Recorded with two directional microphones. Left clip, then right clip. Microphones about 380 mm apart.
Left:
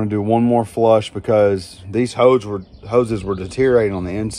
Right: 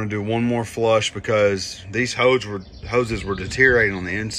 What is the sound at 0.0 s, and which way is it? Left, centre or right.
Speech, centre.